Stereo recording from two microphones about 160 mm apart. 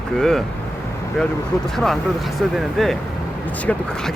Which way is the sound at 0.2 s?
Centre (ahead or behind).